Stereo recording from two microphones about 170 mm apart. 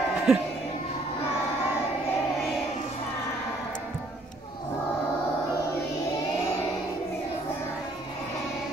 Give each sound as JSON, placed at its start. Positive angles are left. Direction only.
{"t": 0.3, "sound": "speech", "side_deg": 0}